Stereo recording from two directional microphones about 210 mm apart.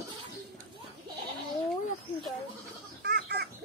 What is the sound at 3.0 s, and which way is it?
Chicken, 50° right (ahead or behind).